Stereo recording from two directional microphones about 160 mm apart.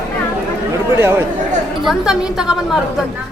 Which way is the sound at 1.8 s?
5° right (ahead or behind).